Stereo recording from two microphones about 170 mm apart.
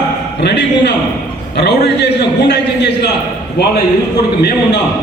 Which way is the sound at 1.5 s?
80° left.